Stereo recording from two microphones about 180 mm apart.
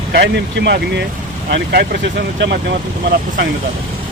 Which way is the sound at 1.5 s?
60° right (ahead or behind).